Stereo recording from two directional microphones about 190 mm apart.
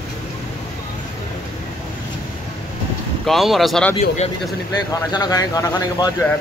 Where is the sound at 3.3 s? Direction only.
Centre (ahead or behind).